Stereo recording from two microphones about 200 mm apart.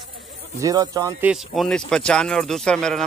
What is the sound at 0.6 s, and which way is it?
Speech, 20° right (ahead or behind).